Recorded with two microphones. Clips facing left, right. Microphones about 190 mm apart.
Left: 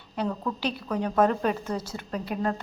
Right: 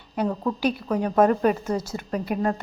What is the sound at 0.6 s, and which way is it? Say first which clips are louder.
A woman's voice: right 5 dB; 10° right (ahead or behind).